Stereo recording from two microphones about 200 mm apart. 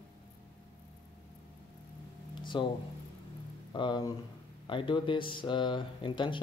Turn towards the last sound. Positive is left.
turn(degrees=25)  # may be behind; listen again after turning